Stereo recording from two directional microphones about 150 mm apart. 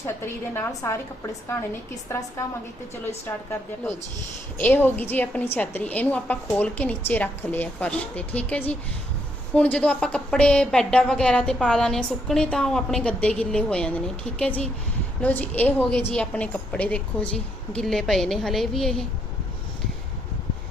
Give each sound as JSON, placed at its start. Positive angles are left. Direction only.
{"t": 0.5, "sound": "a woman's voice", "side_deg": 20}
{"t": 4.5, "sound": "a woman's voice", "side_deg": 15}